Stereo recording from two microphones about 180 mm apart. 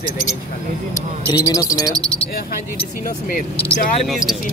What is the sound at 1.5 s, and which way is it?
Cricket, 20° left (ahead or behind).